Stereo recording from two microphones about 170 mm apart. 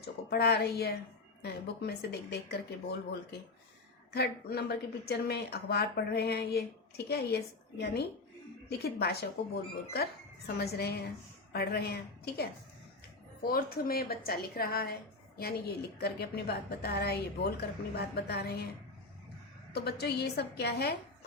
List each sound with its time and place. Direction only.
0.0 s a woman's voice: 70° left (ahead or behind)
4.1 s a woman's voice: 70° left (ahead or behind)
19.7 s a woman's voice: 70° left (ahead or behind)